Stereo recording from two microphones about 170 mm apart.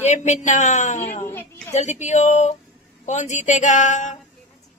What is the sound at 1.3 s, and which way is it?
Speech, 10° left (ahead or behind).